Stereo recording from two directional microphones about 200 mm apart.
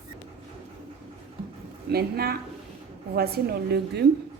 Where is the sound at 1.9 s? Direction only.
50° right (ahead or behind).